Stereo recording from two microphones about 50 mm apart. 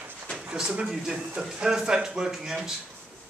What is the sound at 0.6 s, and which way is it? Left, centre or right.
Speech, centre.